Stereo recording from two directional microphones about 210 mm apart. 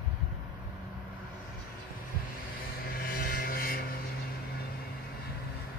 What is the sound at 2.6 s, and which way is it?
Vehicle, 45° left (ahead or behind).